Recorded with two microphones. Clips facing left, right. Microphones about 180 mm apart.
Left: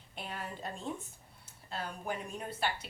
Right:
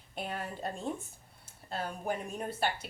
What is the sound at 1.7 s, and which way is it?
Speech, 50° right (ahead or behind).